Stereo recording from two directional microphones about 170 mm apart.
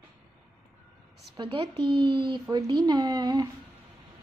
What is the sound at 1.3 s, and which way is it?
Speech, 30° right (ahead or behind).